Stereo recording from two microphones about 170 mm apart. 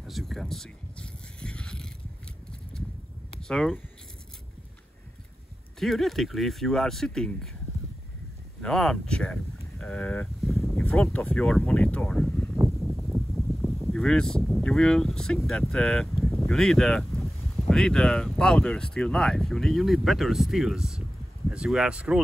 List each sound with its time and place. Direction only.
0.0 s a sound: centre (ahead or behind)
3.3 s speech: 5° left (ahead or behind)
5.8 s speech: centre (ahead or behind)
8.5 s speech: 5° left (ahead or behind)
12.5 s a sound: 15° right (ahead or behind)
12.9 s speech: centre (ahead or behind)